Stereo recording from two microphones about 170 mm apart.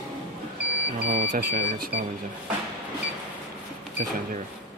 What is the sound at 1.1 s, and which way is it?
Speech, 45° right (ahead or behind).